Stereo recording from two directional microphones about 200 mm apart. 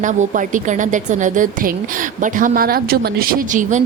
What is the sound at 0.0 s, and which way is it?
A woman's voice, 40° right (ahead or behind).